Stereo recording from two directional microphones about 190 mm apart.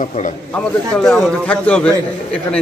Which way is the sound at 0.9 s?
5° left (ahead or behind).